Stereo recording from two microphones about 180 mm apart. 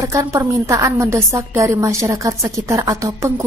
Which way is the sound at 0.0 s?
15° right (ahead or behind).